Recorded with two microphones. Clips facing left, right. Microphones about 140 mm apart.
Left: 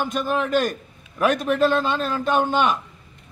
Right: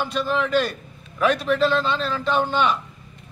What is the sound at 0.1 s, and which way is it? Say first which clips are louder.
A man's voice: right 2 dB; 50° left (ahead or behind).